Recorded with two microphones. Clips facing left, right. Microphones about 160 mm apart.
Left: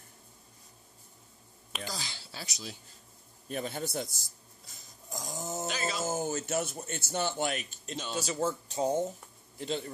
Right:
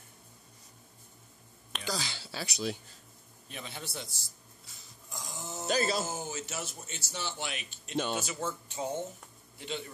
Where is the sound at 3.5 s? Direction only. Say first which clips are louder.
Left 8 dB; 45° left (ahead or behind).